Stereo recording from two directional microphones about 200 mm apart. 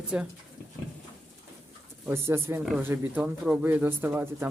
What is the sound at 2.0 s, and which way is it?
Speech, 10° right (ahead or behind).